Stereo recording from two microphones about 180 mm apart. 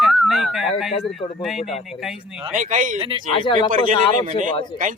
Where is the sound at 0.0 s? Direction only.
Centre (ahead or behind).